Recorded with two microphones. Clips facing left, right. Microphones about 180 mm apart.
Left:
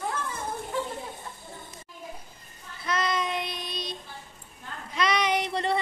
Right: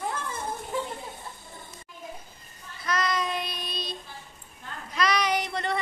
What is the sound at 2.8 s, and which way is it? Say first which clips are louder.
Child singing: even; 25° left (ahead or behind).